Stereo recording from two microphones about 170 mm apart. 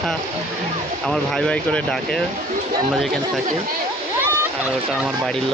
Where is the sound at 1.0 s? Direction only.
5° left (ahead or behind).